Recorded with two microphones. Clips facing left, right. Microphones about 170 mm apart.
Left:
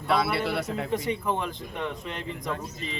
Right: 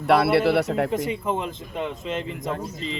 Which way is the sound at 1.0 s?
20° right (ahead or behind).